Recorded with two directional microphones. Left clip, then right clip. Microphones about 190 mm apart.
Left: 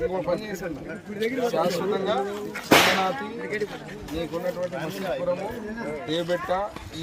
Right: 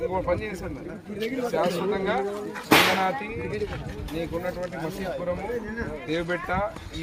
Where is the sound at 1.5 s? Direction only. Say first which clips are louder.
Left 1 dB; 5° right (ahead or behind).